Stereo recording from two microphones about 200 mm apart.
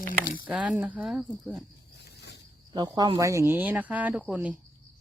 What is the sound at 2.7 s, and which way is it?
Speech, 20° right (ahead or behind).